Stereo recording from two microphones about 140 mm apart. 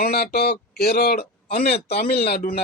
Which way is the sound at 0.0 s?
90° left.